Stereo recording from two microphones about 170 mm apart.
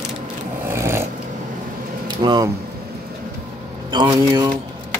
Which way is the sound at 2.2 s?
25° right (ahead or behind).